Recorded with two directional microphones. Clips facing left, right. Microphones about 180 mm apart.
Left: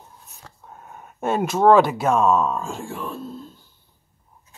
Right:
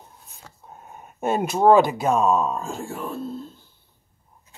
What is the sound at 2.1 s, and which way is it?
Speech, centre (ahead or behind).